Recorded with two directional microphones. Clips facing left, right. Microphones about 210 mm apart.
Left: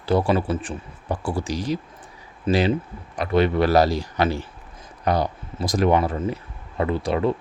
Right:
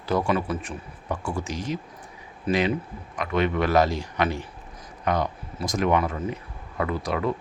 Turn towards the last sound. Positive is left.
turn(degrees=30)  # may be behind; listen again after turning